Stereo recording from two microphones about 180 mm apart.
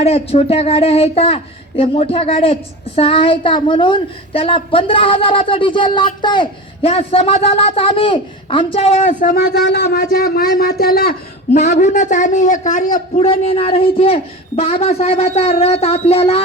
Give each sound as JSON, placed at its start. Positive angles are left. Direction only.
{"t": 0.0, "sound": "speech", "side_deg": 35}
{"t": 9.2, "sound": "speech", "side_deg": 60}
{"t": 11.5, "sound": "a man's voice", "side_deg": 40}
{"t": 13.2, "sound": "speech", "side_deg": 30}